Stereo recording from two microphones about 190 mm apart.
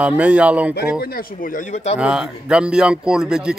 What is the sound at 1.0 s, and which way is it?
Speech, 50° left (ahead or behind).